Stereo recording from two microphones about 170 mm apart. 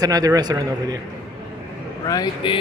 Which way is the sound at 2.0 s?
25° left (ahead or behind).